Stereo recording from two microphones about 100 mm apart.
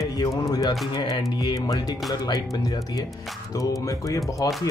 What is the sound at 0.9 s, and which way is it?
Music, 45° left (ahead or behind).